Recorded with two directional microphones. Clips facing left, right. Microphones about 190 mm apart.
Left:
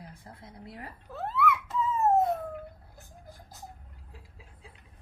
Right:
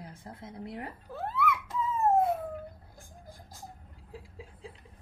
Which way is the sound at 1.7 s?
10° right (ahead or behind).